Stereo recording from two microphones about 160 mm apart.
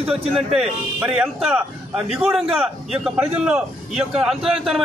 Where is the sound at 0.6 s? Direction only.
5° right (ahead or behind).